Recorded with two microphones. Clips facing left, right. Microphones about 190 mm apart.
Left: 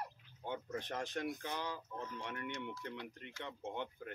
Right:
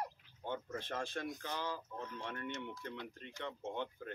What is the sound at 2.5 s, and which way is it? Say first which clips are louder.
Speech: even; 20° right (ahead or behind).